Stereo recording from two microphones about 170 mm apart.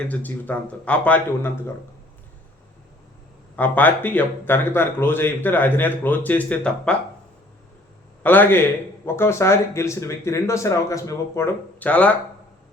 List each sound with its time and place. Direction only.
0.1 s speech: 10° left (ahead or behind)
3.5 s speech: 10° left (ahead or behind)
8.2 s speech: 10° left (ahead or behind)